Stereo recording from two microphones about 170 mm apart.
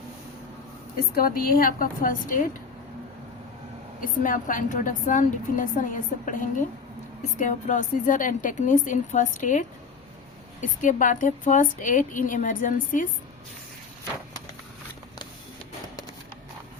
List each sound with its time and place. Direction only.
0.9 s a woman's voice: 60° left (ahead or behind)
4.0 s a woman's voice: 50° left (ahead or behind)
7.3 s a woman's voice: 50° left (ahead or behind)